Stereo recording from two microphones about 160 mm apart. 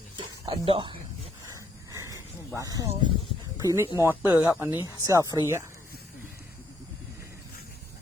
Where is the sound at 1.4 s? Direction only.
20° right (ahead or behind).